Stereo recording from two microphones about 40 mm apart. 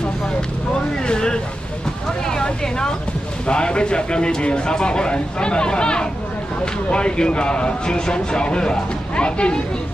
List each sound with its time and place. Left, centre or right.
1.0 s vehicle: centre
3.4 s speech: left